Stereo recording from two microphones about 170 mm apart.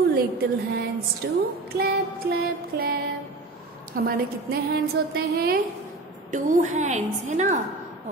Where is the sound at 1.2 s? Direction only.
85° right.